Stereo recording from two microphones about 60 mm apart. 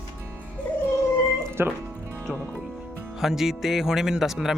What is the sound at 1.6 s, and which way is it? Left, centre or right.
Speech, right.